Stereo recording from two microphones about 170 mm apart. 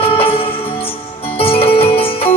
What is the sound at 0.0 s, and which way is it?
Music, 35° left (ahead or behind).